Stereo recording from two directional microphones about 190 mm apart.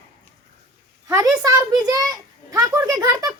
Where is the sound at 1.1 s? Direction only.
15° right (ahead or behind).